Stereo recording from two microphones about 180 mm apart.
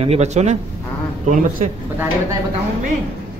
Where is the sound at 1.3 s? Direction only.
50° right (ahead or behind).